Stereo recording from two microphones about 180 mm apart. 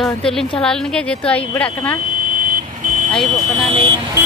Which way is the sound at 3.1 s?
Centre (ahead or behind).